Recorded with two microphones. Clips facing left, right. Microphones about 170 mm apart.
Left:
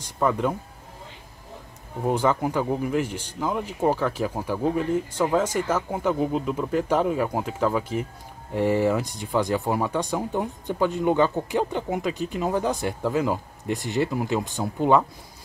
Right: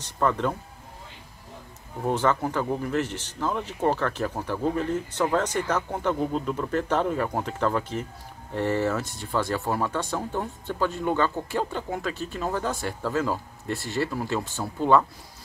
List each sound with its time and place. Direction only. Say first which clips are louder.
0.0 s speech: left 2 dB; 10° left (ahead or behind)
2.0 s speech: left 2 dB; 10° left (ahead or behind)